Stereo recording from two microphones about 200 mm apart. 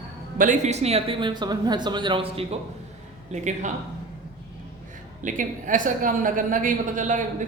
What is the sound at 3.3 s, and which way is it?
Speech, 35° right (ahead or behind).